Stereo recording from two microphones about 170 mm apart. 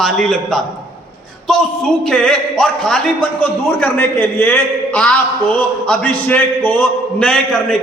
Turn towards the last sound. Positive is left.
turn(degrees=5)  # may be behind; listen again after turning